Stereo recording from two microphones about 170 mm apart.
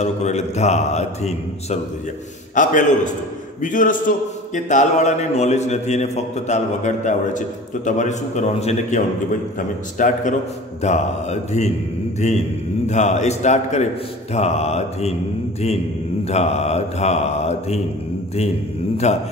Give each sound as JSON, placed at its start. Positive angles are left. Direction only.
{"t": 0.0, "sound": "a man's voice", "side_deg": 40}
{"t": 16.3, "sound": "a man's voice", "side_deg": 40}
{"t": 19.1, "sound": "a man's voice", "side_deg": 40}